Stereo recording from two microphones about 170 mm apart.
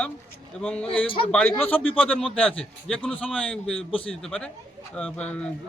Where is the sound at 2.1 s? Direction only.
5° left (ahead or behind).